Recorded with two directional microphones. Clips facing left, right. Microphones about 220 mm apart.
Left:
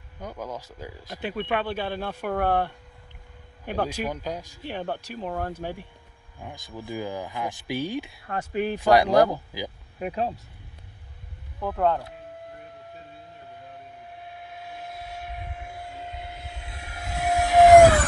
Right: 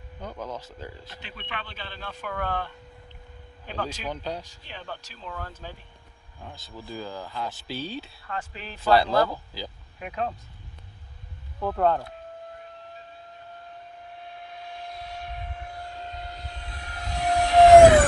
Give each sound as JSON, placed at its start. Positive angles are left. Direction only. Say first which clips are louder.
{"t": 0.2, "sound": "speech", "louder": "left 1 dB", "side_deg": 10}
{"t": 1.2, "sound": "speech", "louder": "left 13 dB", "side_deg": 50}
{"t": 4.0, "sound": "speech", "louder": "left 3 dB", "side_deg": 10}
{"t": 4.6, "sound": "speech", "louder": "left 9 dB", "side_deg": 60}
{"t": 6.4, "sound": "speech", "louder": "left 4 dB", "side_deg": 15}
{"t": 8.3, "sound": "speech", "louder": "left 11 dB", "side_deg": 50}
{"t": 8.7, "sound": "speech", "louder": "left 2 dB", "side_deg": 15}
{"t": 9.9, "sound": "speech", "louder": "left 3 dB", "side_deg": 35}
{"t": 11.6, "sound": "speech", "louder": "right 1 dB", "side_deg": 5}
{"t": 14.2, "sound": "vehicle", "louder": "even", "side_deg": 10}